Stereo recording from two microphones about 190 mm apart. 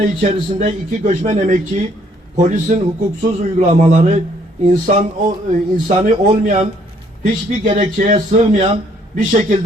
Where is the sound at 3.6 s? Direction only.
40° right (ahead or behind).